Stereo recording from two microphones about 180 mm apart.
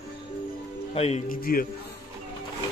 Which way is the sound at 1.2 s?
55° left (ahead or behind).